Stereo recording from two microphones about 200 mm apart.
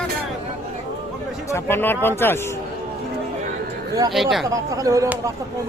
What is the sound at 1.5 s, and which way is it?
Speech, 10° left (ahead or behind).